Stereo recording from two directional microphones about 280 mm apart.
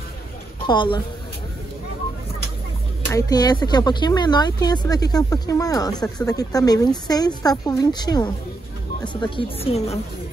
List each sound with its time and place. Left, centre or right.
0.7 s speech: centre
3.1 s a woman's voice: centre